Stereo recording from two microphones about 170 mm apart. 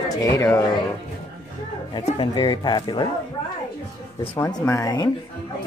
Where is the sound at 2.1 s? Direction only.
30° left (ahead or behind).